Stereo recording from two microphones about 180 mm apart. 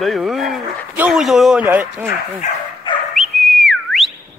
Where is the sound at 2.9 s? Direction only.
25° left (ahead or behind).